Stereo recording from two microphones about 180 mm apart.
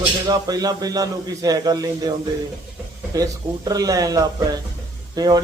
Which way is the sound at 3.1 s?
20° right (ahead or behind).